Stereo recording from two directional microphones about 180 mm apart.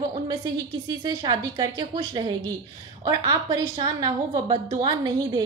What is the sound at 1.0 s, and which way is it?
A woman's voice, 25° right (ahead or behind).